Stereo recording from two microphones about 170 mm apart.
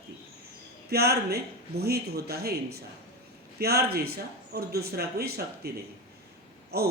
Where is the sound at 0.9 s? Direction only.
70° right (ahead or behind).